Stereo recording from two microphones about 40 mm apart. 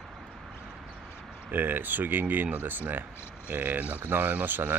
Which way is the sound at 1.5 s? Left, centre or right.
Right.